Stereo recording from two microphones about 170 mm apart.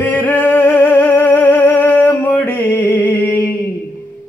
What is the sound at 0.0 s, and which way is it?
Music, 10° left (ahead or behind).